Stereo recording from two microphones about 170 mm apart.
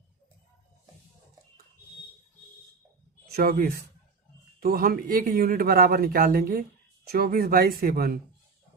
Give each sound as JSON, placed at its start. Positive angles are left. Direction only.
{"t": 3.2, "sound": "speech", "side_deg": -65}